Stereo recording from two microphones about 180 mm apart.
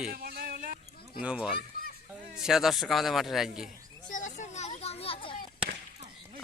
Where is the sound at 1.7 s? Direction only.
55° left (ahead or behind).